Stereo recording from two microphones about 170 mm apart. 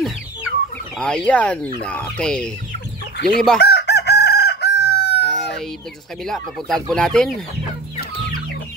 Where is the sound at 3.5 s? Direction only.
70° left (ahead or behind).